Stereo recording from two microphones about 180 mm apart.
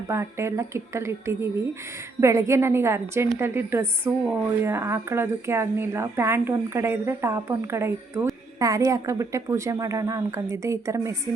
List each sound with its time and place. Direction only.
0.1 s speech: 15° right (ahead or behind)